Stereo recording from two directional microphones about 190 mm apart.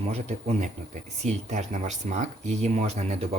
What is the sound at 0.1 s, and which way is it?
Speech, 35° right (ahead or behind).